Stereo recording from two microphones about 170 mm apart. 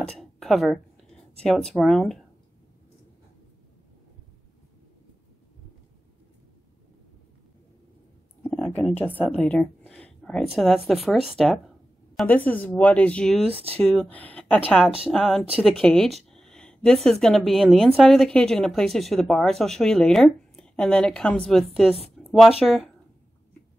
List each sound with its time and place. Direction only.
0.0 s a sound: 5° left (ahead or behind)
1.4 s a woman's voice: 5° left (ahead or behind)
8.5 s a sound: 10° left (ahead or behind)
9.3 s a woman's voice: 5° left (ahead or behind)
13.5 s speech: 35° right (ahead or behind)
13.7 s a woman's voice: centre (ahead or behind)